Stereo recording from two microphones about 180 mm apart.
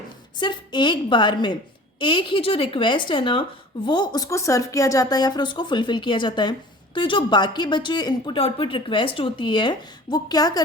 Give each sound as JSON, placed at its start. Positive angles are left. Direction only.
{"t": 0.3, "sound": "speech", "side_deg": 25}